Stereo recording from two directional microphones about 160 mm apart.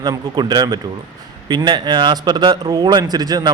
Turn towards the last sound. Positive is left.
turn(degrees=-25)  # may be behind; listen again after turning